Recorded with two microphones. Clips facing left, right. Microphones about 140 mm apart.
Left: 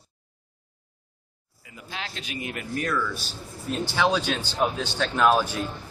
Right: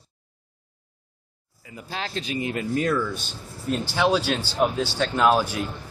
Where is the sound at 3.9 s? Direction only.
10° right (ahead or behind).